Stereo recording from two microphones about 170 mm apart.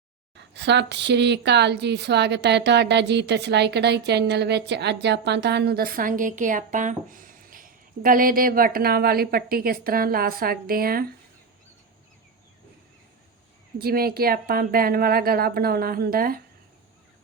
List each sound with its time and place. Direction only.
0.3 s a woman's voice: 90° right; by 11.0 s 60° right (ahead or behind)
13.7 s speech: 65° right (ahead or behind)